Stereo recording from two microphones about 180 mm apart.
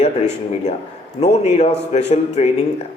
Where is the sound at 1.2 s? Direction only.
40° left (ahead or behind).